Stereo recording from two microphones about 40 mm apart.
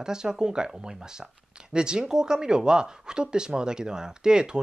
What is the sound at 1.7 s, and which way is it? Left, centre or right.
Speech, right.